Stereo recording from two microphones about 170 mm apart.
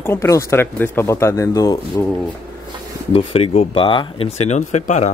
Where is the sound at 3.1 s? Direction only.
35° left (ahead or behind).